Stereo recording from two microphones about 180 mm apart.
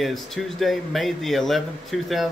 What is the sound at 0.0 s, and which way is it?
Speech, centre (ahead or behind).